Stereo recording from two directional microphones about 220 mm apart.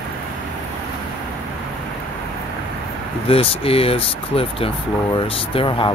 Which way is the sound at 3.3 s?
25° left (ahead or behind).